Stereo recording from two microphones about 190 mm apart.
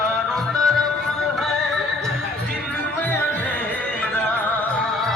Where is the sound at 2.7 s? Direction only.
10° left (ahead or behind).